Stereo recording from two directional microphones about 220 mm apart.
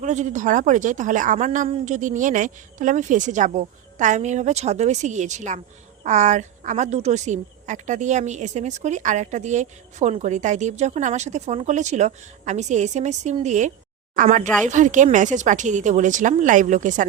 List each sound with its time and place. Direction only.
0.0 s speech: 35° right (ahead or behind)